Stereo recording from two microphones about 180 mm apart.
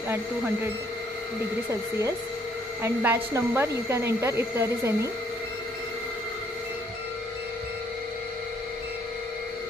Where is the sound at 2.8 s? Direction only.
15° right (ahead or behind).